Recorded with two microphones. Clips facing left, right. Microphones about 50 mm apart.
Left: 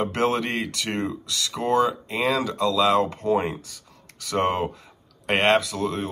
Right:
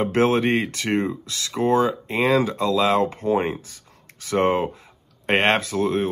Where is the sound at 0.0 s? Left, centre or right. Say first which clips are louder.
Right 4 dB; right.